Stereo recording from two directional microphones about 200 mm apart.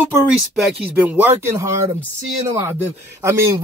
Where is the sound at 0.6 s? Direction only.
5° right (ahead or behind).